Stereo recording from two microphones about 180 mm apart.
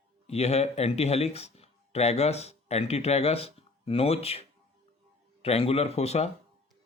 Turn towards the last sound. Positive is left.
turn(degrees=35)  # may be behind; listen again after turning